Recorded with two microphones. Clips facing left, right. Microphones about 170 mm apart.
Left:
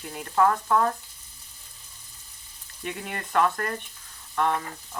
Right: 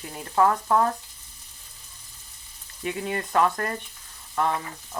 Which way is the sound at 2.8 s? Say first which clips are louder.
Right 5 dB; 5° right (ahead or behind).